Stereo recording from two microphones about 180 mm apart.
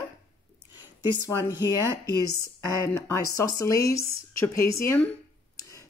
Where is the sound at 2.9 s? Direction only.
20° left (ahead or behind).